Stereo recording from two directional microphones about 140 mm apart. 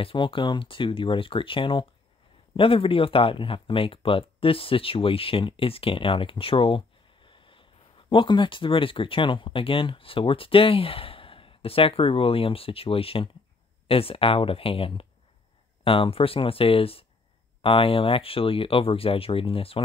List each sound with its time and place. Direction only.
0.0 s speech: 35° left (ahead or behind)
7.2 s a sound: 35° left (ahead or behind)
8.1 s speech: 35° left (ahead or behind)